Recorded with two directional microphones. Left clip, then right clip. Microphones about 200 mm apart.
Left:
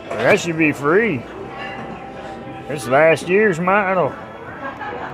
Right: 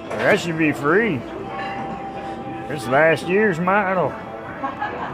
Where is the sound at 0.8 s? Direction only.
20° left (ahead or behind).